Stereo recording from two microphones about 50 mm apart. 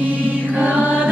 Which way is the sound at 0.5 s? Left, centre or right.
Right.